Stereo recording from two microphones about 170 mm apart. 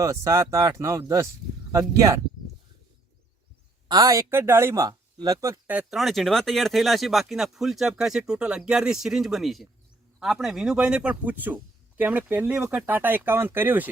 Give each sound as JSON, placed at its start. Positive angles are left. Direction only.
{"t": 0.0, "sound": "speech", "side_deg": -20}
{"t": 3.8, "sound": "speech", "side_deg": -20}